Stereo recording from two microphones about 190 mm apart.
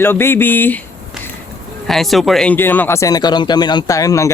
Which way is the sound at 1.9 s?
Centre (ahead or behind).